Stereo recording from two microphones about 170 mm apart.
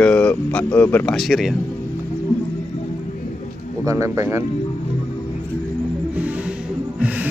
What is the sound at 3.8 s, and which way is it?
Speech, 20° right (ahead or behind).